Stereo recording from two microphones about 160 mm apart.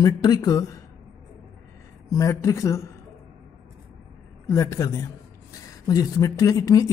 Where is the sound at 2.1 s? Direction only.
20° left (ahead or behind).